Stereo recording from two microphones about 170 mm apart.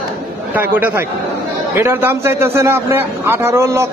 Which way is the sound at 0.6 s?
10° right (ahead or behind).